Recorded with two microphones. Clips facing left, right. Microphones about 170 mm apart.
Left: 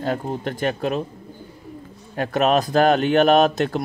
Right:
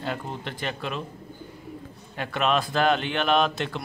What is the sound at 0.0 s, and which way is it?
Speech, 40° left (ahead or behind).